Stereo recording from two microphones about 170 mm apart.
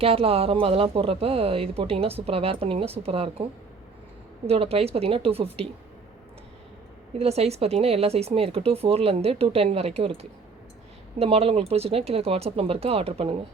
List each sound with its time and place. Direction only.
0.0 s speech: 35° right (ahead or behind)
7.1 s speech: 40° right (ahead or behind)